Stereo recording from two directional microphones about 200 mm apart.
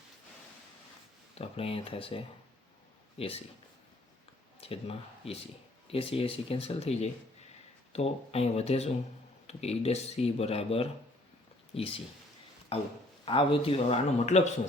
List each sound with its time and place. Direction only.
1.4 s speech: 30° left (ahead or behind)
4.6 s speech: 30° left (ahead or behind)